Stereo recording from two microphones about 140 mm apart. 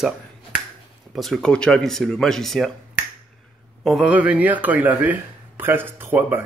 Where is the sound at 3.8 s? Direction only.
5° right (ahead or behind).